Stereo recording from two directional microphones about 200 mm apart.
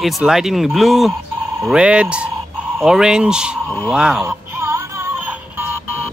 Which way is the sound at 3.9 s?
5° right (ahead or behind).